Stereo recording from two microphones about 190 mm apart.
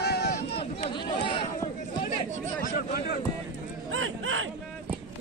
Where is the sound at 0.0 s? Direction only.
60° left (ahead or behind).